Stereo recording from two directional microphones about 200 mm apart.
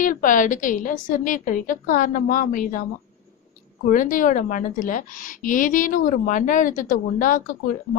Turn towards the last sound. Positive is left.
turn(degrees=45)  # may be behind; listen again after turning